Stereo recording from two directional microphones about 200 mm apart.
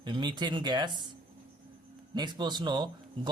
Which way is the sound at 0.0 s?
20° right (ahead or behind).